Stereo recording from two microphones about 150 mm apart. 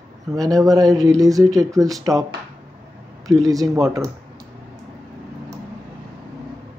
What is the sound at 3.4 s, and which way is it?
Speech, 25° right (ahead or behind).